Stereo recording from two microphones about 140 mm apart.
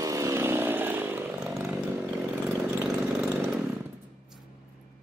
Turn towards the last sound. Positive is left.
turn(degrees=-10)  # may be behind; listen again after turning